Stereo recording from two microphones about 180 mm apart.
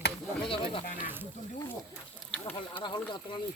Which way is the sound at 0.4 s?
30° left (ahead or behind).